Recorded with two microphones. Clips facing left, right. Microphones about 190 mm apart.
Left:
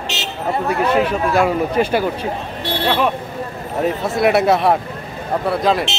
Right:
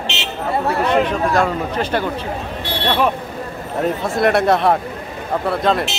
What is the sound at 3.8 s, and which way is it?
Speech, 5° left (ahead or behind).